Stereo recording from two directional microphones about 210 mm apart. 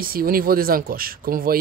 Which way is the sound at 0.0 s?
45° right (ahead or behind).